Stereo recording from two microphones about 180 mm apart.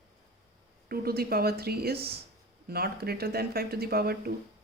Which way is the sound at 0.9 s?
55° right (ahead or behind).